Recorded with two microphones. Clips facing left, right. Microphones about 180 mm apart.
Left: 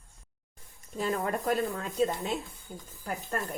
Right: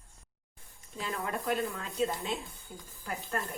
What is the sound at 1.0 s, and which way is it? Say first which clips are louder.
Speech: left 6 dB; 45° left (ahead or behind).